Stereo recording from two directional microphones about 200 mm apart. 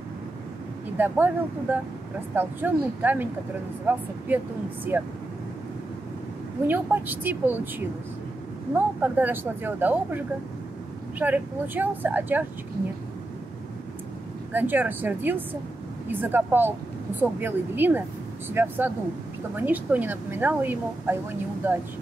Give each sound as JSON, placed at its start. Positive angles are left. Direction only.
{"t": 0.9, "sound": "a woman's voice", "side_deg": -10}
{"t": 6.7, "sound": "a woman's voice", "side_deg": -10}
{"t": 8.7, "sound": "a woman's voice", "side_deg": -10}
{"t": 14.5, "sound": "a woman's voice", "side_deg": -10}